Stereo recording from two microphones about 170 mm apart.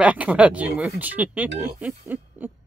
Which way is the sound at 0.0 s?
5° right (ahead or behind).